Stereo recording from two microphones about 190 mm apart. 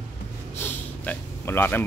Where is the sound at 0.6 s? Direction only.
10° left (ahead or behind).